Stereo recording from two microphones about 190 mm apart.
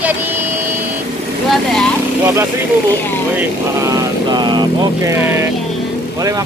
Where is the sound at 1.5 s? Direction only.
Centre (ahead or behind).